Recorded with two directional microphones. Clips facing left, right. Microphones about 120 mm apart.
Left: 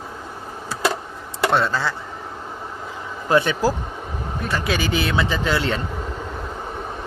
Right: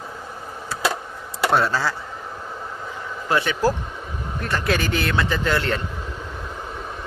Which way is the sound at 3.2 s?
20° left (ahead or behind).